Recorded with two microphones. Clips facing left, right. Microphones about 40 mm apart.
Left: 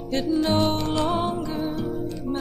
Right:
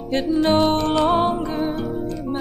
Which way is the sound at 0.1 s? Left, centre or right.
Right.